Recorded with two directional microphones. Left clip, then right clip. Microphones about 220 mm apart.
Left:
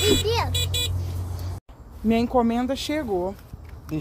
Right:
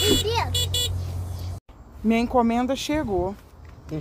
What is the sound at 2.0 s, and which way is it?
Speech, 25° right (ahead or behind).